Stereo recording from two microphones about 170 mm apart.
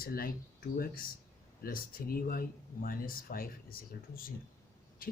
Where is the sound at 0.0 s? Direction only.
60° left (ahead or behind).